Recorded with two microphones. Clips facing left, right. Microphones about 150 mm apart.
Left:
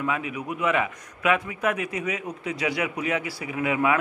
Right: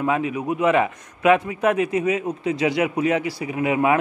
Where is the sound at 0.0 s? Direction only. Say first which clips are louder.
Right 6 dB; 35° right (ahead or behind).